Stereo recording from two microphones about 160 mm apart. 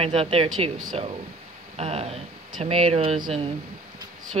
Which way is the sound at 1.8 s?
40° right (ahead or behind).